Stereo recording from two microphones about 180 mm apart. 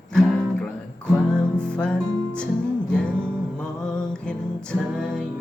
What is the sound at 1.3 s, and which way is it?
Music, 5° left (ahead or behind).